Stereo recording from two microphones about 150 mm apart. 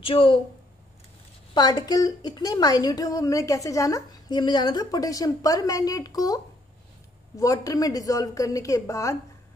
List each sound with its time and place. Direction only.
0.0 s a woman's voice: 40° left (ahead or behind)
1.5 s a woman's voice: 30° left (ahead or behind)